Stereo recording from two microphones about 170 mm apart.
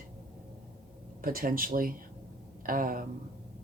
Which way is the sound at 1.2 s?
55° right (ahead or behind).